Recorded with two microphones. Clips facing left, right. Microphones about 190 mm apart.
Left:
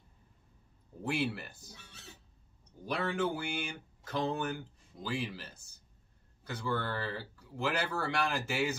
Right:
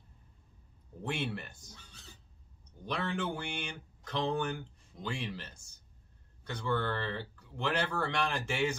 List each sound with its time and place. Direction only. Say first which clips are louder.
1.0 s speech: left 3 dB; 5° left (ahead or behind)
1.8 s a sound: left 3 dB; 65° left (ahead or behind)
2.8 s speech: left 2 dB; 5° left (ahead or behind)